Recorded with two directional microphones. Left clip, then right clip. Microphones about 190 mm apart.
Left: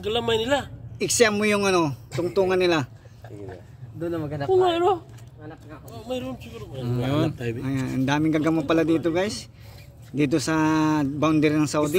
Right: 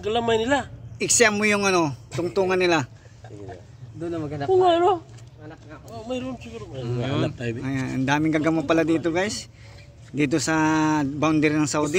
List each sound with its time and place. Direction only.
0.0 s speech: 25° right (ahead or behind)
0.9 s speech: centre (ahead or behind)
4.0 s speech: 35° right (ahead or behind)
6.8 s speech: 65° left (ahead or behind)
7.3 s speech: 40° right (ahead or behind)
7.6 s speech: centre (ahead or behind)